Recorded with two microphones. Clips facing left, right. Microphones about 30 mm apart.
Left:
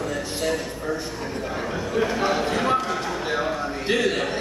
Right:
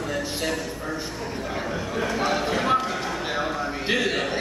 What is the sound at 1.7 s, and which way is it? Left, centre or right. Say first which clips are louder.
Speech: left 4 dB; centre.